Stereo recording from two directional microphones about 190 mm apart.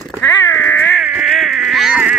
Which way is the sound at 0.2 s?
15° left (ahead or behind).